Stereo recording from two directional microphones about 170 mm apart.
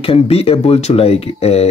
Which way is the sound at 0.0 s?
35° left (ahead or behind).